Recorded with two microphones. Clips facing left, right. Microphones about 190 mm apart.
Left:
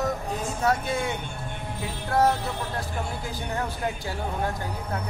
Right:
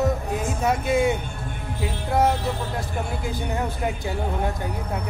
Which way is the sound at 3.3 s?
20° right (ahead or behind).